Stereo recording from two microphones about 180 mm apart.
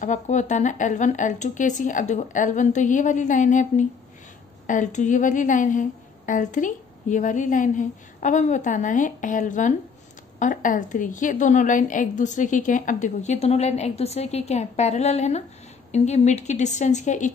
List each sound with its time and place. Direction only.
0.0 s a woman's voice: 45° left (ahead or behind)